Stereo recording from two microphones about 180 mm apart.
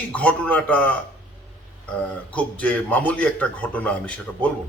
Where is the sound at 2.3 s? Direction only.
10° left (ahead or behind).